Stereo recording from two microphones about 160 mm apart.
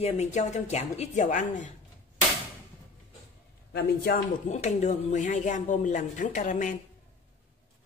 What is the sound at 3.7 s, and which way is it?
Speech, 80° left.